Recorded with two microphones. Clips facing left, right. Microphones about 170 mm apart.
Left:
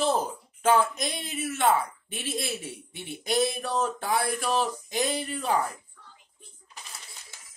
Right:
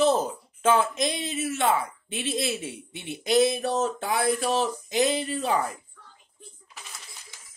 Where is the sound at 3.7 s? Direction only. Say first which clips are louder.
Right 2 dB; 50° right (ahead or behind).